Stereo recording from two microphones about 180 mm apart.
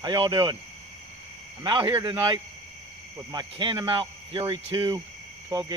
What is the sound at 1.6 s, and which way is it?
Speech, 25° right (ahead or behind).